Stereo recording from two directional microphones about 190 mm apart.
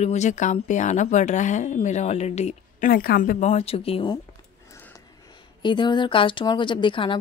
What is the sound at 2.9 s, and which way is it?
Speech, 50° left (ahead or behind).